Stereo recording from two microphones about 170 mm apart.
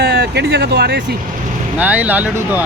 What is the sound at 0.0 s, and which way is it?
Speech, 65° right (ahead or behind).